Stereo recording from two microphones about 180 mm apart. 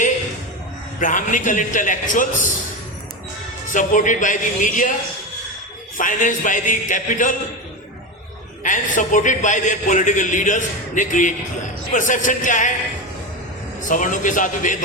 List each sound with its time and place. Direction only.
0.9 s a man's voice: 45° left (ahead or behind)
3.7 s a man's voice: 45° left (ahead or behind)
6.0 s a man's voice: 45° left (ahead or behind)
8.6 s a man's voice: 45° left (ahead or behind)
13.8 s a man's voice: 45° left (ahead or behind)